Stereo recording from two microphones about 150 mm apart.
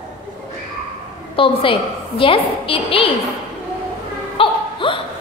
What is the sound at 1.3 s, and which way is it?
A woman's voice, 35° left (ahead or behind).